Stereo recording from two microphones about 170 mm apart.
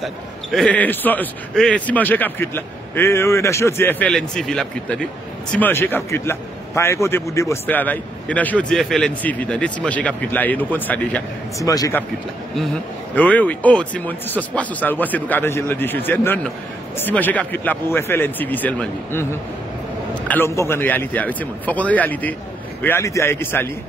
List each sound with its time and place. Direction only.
0.0 s a man's voice: centre (ahead or behind)
11.6 s speech: 20° left (ahead or behind)
13.1 s a man's voice: 10° left (ahead or behind)
20.2 s a man's voice: 15° left (ahead or behind)